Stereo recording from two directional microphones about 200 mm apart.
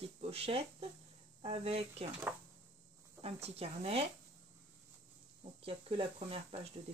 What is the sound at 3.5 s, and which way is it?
Speech, 30° right (ahead or behind).